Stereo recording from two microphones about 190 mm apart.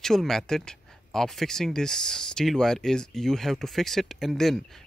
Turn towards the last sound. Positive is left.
turn(degrees=0)  # may be behind; listen again after turning